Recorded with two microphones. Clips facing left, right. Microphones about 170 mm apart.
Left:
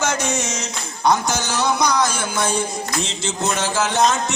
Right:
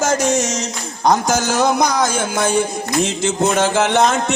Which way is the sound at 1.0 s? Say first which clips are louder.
Right 3 dB; 45° right (ahead or behind).